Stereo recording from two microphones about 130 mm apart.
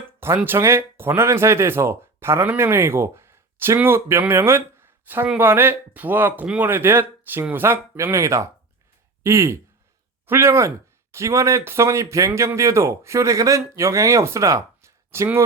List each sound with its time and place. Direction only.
0.3 s speech: 15° right (ahead or behind)